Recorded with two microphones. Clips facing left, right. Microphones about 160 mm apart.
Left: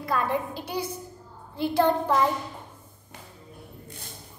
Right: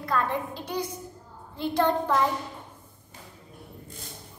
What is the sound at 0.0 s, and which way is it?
A woman's voice, 10° left (ahead or behind).